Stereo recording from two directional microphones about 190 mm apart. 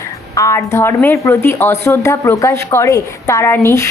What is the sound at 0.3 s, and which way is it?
A woman's voice, 15° left (ahead or behind).